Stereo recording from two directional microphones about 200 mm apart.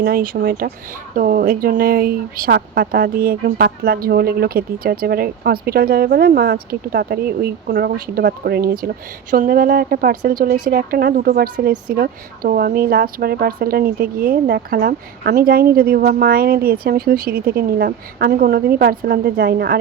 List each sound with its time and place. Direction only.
0.0 s speech: 45° right (ahead or behind)